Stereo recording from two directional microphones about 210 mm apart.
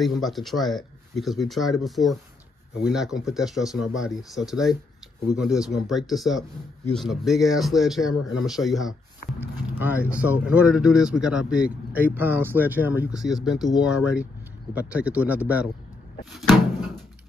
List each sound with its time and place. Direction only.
0.0 s speech: centre (ahead or behind)